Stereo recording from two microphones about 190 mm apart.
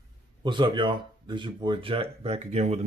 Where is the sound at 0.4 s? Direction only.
25° right (ahead or behind).